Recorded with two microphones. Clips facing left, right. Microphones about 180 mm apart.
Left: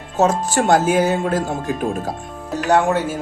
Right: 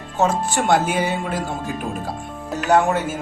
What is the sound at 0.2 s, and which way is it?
Speech, 40° left (ahead or behind).